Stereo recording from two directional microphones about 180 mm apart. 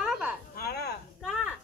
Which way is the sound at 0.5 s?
60° left (ahead or behind).